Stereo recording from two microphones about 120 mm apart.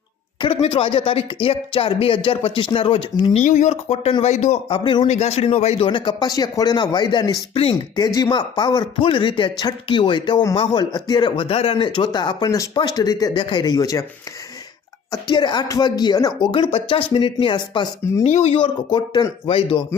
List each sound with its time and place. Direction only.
0.4 s speech: 50° left (ahead or behind)
3.3 s speech: 85° left
4.2 s speech: 70° left (ahead or behind)
4.7 s speech: 40° left (ahead or behind)
5.0 s speech: 65° left (ahead or behind)
5.8 s speech: 40° left (ahead or behind)
7.5 s speech: 50° left (ahead or behind)
7.9 s speech: 30° left (ahead or behind)
15.3 s speech: 40° left (ahead or behind)
18.2 s speech: 65° left (ahead or behind)
18.5 s speech: 40° left (ahead or behind)